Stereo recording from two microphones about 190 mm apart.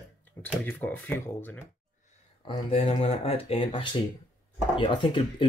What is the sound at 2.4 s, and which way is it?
Speech, 30° left (ahead or behind).